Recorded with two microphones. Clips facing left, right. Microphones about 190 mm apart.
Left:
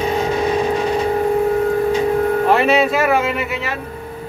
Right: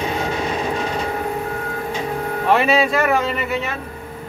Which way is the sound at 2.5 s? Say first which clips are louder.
Right 1 dB; centre (ahead or behind).